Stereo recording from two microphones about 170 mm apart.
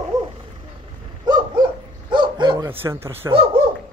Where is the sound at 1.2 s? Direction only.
25° right (ahead or behind).